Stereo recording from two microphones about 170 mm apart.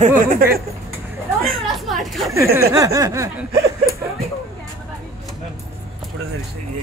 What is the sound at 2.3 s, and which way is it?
Snicker, 15° right (ahead or behind).